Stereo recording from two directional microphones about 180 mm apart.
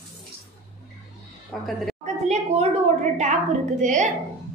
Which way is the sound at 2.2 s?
40° right (ahead or behind).